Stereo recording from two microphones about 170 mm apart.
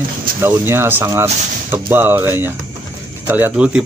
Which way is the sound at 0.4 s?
15° right (ahead or behind).